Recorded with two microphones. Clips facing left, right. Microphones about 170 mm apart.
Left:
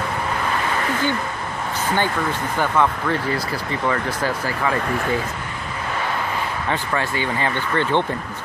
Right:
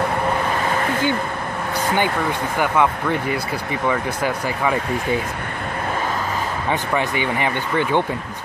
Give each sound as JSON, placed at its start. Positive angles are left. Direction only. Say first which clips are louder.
{"t": 2.6, "sound": "speech", "louder": "right 1 dB", "side_deg": -15}
{"t": 6.7, "sound": "speech", "louder": "right 3 dB", "side_deg": -15}